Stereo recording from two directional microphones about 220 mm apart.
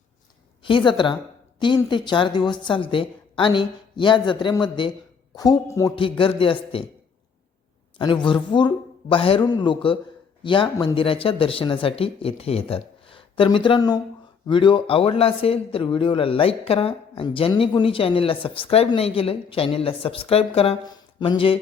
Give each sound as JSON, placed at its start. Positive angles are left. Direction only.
{"t": 0.6, "sound": "speech", "side_deg": 20}
{"t": 7.9, "sound": "speech", "side_deg": 20}